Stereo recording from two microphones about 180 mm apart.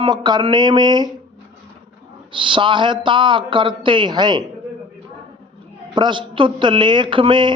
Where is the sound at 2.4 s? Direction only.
25° right (ahead or behind).